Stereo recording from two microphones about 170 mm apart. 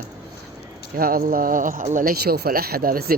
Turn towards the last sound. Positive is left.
turn(degrees=-60)  # may be behind; listen again after turning